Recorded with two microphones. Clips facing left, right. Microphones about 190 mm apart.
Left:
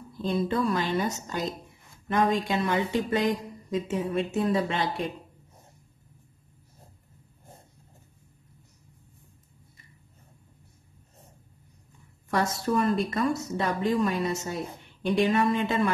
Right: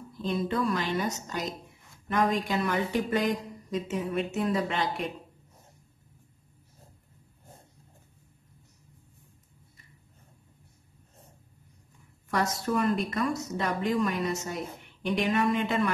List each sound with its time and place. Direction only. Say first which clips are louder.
0.2 s a woman's voice: left 2 dB; 30° left (ahead or behind)
12.3 s a woman's voice: left 2 dB; 30° left (ahead or behind)